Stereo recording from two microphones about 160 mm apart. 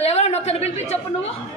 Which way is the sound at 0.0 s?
40° left (ahead or behind).